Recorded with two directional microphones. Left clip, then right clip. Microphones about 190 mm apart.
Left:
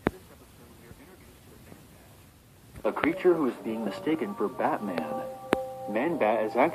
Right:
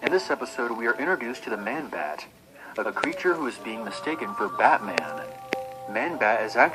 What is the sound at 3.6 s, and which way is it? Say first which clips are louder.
Speech: even; 40° left (ahead or behind).